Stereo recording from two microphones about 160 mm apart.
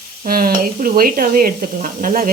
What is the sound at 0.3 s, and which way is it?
Speech, 65° right (ahead or behind).